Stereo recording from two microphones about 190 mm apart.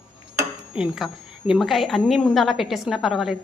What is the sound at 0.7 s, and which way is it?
A woman's voice, 5° right (ahead or behind).